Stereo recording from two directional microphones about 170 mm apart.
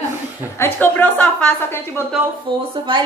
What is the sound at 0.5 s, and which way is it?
A woman's voice, 10° left (ahead or behind).